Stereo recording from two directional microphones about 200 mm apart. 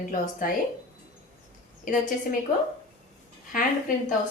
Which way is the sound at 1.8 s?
40° left (ahead or behind).